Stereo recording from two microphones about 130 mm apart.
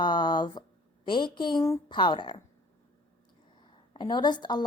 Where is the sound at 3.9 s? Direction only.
35° left (ahead or behind).